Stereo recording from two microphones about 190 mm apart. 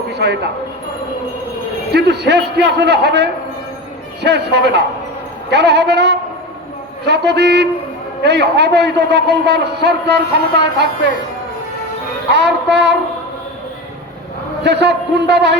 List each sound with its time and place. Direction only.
0.1 s a man's voice: 65° right (ahead or behind)
1.9 s a man's voice: 60° right (ahead or behind)
12.3 s a man's voice: 65° right (ahead or behind)
14.6 s a man's voice: 65° right (ahead or behind)